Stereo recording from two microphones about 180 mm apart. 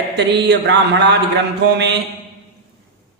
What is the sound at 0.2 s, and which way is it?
A man's voice, 70° right (ahead or behind).